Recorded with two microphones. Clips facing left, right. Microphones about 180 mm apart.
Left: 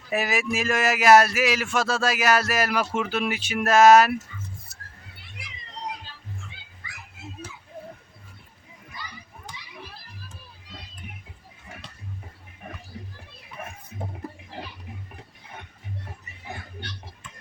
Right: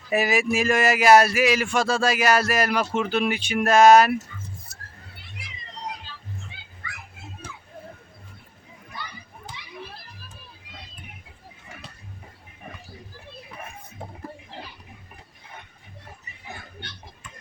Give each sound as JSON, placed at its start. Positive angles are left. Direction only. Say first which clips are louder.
{"t": 0.1, "sound": "speech", "louder": "right 4 dB", "side_deg": 0}
{"t": 8.9, "sound": "children playing", "louder": "right 3 dB", "side_deg": -65}